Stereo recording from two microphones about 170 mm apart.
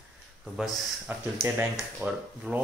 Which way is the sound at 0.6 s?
10° right (ahead or behind).